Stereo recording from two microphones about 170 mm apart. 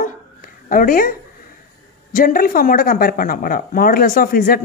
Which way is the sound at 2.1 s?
55° left (ahead or behind).